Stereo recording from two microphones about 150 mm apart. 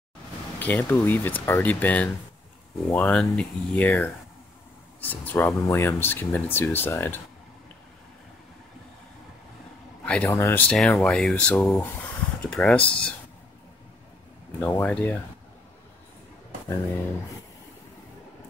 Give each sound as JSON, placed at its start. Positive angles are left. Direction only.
{"t": 0.6, "sound": "speech", "side_deg": 10}
{"t": 10.0, "sound": "speech", "side_deg": 10}
{"t": 14.6, "sound": "speech", "side_deg": 15}
{"t": 16.6, "sound": "speech", "side_deg": 20}